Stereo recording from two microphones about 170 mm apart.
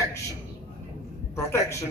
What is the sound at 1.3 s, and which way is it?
Speech, 15° left (ahead or behind).